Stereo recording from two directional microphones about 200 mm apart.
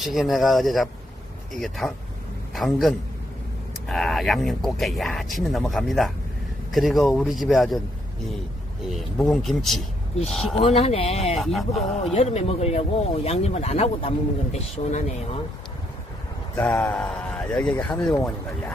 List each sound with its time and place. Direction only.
0.0 s a man's voice: centre (ahead or behind)
8.9 s speech: centre (ahead or behind)
10.5 s speech: 30° left (ahead or behind)
11.3 s speech: centre (ahead or behind)
12.0 s speech: 30° left (ahead or behind)
16.5 s speech: 5° left (ahead or behind)